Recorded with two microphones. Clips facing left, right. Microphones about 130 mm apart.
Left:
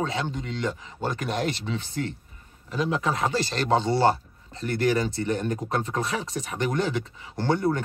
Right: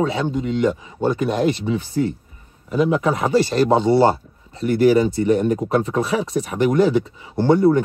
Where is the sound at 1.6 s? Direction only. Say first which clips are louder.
Right 9 dB; 15° right (ahead or behind).